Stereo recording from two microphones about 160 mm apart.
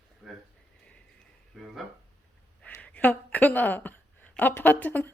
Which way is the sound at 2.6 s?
10° left (ahead or behind).